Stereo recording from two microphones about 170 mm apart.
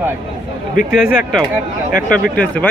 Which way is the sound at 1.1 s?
50° left (ahead or behind).